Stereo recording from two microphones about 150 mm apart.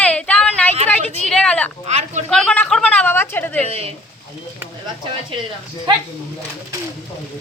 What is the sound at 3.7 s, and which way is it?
Speech, 40° right (ahead or behind).